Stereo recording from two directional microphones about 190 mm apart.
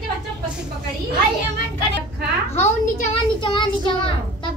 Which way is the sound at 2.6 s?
40° left (ahead or behind).